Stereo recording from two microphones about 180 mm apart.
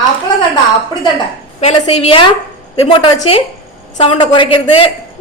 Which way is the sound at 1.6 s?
30° left (ahead or behind).